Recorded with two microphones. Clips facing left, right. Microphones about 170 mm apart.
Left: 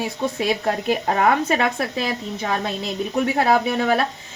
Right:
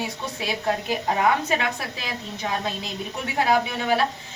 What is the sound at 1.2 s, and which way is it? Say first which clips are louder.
A woman's voice: left 3 dB; 50° left (ahead or behind).